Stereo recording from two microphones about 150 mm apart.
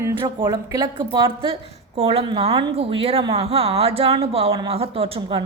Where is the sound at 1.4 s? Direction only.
40° right (ahead or behind).